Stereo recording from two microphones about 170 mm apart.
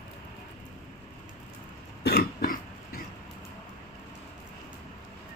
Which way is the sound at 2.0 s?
65° left (ahead or behind).